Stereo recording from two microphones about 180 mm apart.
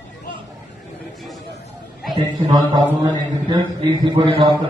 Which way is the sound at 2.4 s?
20° right (ahead or behind).